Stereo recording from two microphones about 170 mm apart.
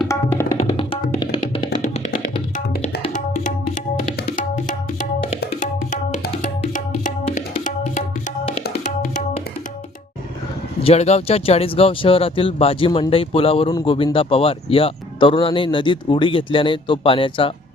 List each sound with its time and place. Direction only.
0.1 s tabla: 15° left (ahead or behind)
0.8 s music: 30° left (ahead or behind)
4.4 s tabla: 50° left (ahead or behind)
6.4 s music: 45° left (ahead or behind)
8.8 s music: 50° left (ahead or behind)
10.8 s speech: 40° left (ahead or behind)